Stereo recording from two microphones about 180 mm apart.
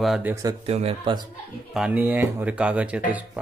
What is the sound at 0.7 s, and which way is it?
Speech, 35° right (ahead or behind).